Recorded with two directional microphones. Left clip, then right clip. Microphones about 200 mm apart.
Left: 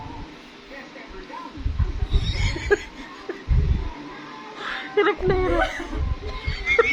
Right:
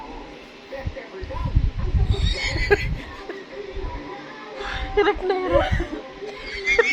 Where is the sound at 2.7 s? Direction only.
10° right (ahead or behind).